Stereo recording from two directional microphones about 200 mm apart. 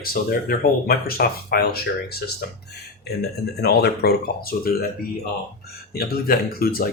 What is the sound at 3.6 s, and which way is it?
Speech, 50° left (ahead or behind).